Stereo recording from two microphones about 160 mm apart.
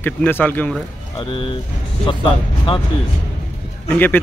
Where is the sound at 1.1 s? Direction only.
30° left (ahead or behind).